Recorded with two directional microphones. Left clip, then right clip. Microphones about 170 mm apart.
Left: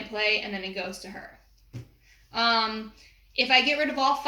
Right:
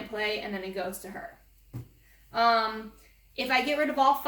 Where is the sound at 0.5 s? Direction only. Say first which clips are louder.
Left 1 dB; 5° left (ahead or behind).